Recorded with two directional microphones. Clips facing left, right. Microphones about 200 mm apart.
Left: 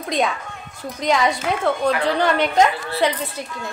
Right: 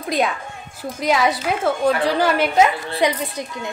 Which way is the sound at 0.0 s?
Centre (ahead or behind).